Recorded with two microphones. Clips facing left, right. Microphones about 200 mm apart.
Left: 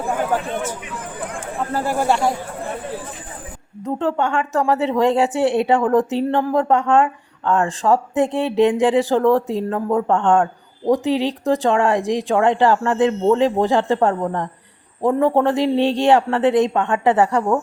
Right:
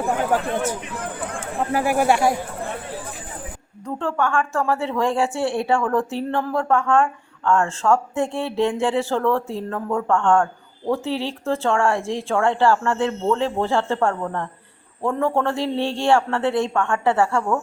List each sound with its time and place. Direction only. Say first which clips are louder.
0.5 s speech: right 1 dB; 10° right (ahead or behind)
3.8 s a woman's voice: left 3 dB; 20° left (ahead or behind)